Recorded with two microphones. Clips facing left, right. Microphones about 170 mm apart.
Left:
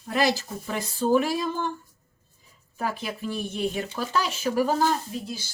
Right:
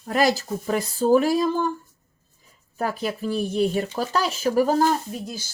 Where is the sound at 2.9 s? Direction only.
40° right (ahead or behind).